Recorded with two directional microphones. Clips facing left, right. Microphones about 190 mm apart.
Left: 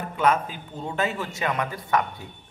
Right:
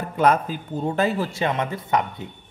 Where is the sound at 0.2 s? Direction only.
40° right (ahead or behind).